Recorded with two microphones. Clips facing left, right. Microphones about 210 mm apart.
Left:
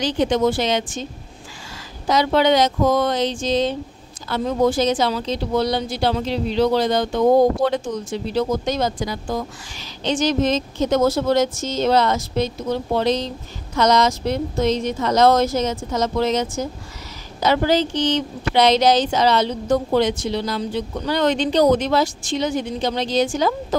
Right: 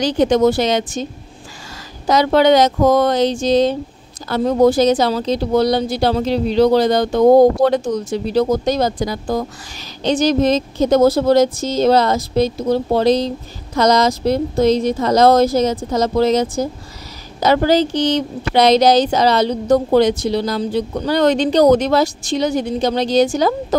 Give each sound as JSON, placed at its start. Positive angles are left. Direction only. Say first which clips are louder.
{"t": 0.0, "sound": "speech", "louder": "right 5 dB", "side_deg": -40}
{"t": 2.0, "sound": "speech", "louder": "right 4 dB", "side_deg": -40}